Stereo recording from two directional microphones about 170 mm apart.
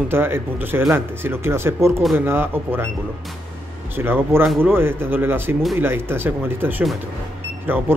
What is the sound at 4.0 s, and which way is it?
Speech, 10° right (ahead or behind).